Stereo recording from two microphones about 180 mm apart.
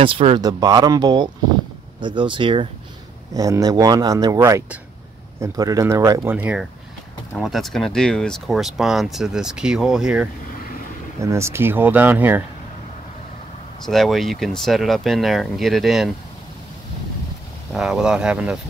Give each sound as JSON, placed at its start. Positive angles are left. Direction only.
{"t": 0.0, "sound": "speech", "side_deg": -30}
{"t": 11.2, "sound": "speech", "side_deg": -15}
{"t": 13.8, "sound": "speech", "side_deg": 0}
{"t": 17.7, "sound": "speech", "side_deg": -5}